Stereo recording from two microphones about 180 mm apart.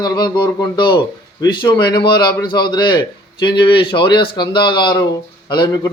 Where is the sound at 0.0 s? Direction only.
25° left (ahead or behind).